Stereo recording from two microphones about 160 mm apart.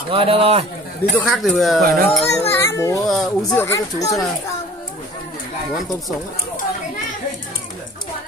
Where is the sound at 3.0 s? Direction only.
Centre (ahead or behind).